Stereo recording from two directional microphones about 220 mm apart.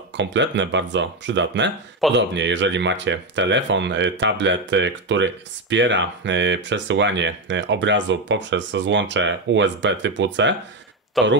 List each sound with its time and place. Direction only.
0.2 s speech: 55° right (ahead or behind)
11.2 s speech: centre (ahead or behind)